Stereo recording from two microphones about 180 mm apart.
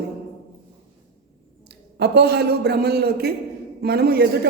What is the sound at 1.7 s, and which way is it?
A man's voice, 65° right (ahead or behind).